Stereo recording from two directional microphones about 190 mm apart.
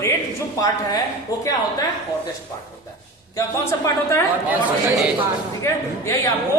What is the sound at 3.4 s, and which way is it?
Speech, 15° left (ahead or behind).